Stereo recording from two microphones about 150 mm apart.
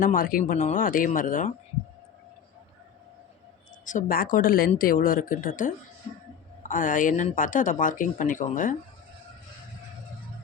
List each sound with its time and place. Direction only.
0.0 s speech: 70° left (ahead or behind)
3.8 s a woman's voice: 65° left (ahead or behind)